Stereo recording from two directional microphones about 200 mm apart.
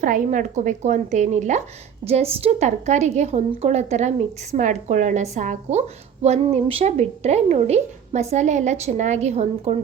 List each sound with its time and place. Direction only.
0.0 s a woman's voice: 40° right (ahead or behind)